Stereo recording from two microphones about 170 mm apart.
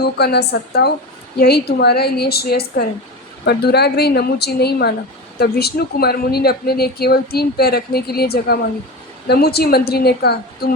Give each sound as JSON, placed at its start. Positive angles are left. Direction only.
{"t": 0.0, "sound": "speech", "side_deg": 70}